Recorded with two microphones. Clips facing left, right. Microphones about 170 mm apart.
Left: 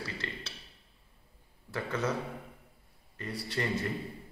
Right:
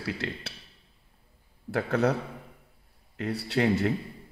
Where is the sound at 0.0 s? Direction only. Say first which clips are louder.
Right 7 dB; 65° right (ahead or behind).